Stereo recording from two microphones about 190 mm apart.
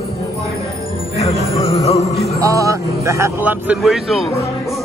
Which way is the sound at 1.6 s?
15° left (ahead or behind).